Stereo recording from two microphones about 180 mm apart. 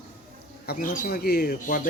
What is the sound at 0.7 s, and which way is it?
Speech, 50° left (ahead or behind).